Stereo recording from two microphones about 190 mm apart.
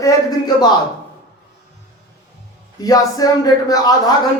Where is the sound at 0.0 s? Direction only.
20° left (ahead or behind).